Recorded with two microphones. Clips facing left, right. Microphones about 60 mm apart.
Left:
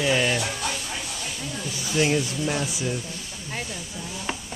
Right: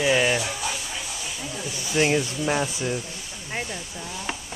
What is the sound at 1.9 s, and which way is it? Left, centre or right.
Speech, centre.